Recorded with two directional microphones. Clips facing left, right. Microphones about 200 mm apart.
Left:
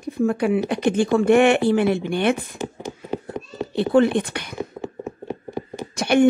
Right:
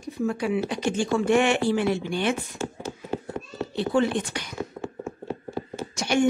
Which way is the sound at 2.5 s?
15° left (ahead or behind).